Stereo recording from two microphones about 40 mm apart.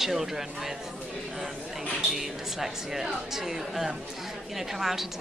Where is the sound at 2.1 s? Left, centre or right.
Centre.